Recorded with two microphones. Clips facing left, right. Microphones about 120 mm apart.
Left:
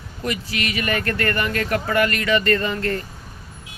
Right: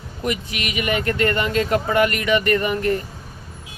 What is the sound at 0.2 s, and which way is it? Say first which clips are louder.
Speech: right 1 dB; 20° right (ahead or behind).